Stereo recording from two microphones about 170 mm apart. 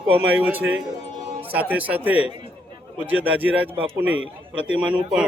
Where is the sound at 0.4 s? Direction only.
10° right (ahead or behind).